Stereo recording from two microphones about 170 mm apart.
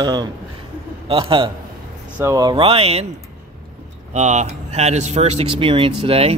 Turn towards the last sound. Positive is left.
turn(degrees=-35)  # may be behind; listen again after turning